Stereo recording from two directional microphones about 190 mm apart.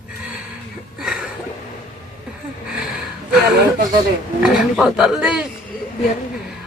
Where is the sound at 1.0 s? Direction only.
5° right (ahead or behind).